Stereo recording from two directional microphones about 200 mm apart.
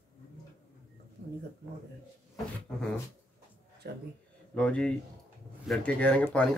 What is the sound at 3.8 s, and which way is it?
Speech, 55° right (ahead or behind).